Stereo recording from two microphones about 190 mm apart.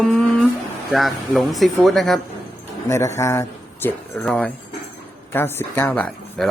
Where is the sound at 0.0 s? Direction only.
5° left (ahead or behind).